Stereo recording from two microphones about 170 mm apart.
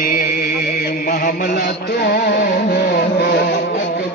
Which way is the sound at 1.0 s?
55° left (ahead or behind).